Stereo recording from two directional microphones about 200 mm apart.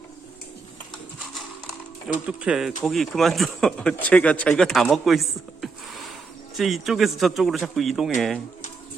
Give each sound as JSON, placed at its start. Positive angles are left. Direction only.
{"t": 2.2, "sound": "speech", "side_deg": -5}
{"t": 6.6, "sound": "speech", "side_deg": 0}